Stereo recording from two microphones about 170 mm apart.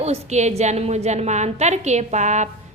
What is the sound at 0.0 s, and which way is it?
A woman's voice, 40° right (ahead or behind).